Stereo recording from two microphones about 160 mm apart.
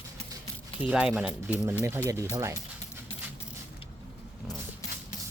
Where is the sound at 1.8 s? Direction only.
15° right (ahead or behind).